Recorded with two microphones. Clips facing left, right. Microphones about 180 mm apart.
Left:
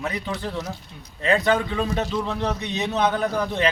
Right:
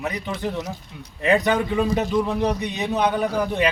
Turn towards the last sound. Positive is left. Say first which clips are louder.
# right 1 dB
turn(degrees=-10)  # may be behind; listen again after turning